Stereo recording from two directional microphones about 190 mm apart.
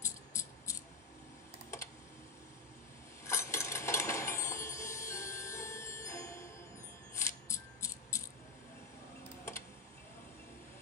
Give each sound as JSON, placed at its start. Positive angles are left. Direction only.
{"t": 0.0, "sound": "music", "side_deg": 15}
{"t": 3.3, "sound": "music", "side_deg": 15}